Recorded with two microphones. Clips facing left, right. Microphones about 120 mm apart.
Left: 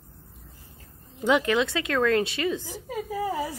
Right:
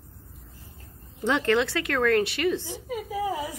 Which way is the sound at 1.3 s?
15° left (ahead or behind).